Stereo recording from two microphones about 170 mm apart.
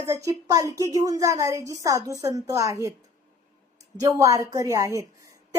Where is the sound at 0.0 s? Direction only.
20° right (ahead or behind).